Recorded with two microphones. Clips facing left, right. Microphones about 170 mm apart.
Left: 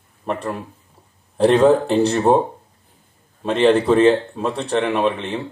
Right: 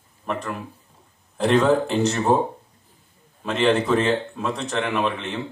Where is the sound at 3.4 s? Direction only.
30° left (ahead or behind).